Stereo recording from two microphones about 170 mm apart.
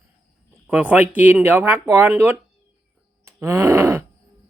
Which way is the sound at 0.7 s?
5° right (ahead or behind).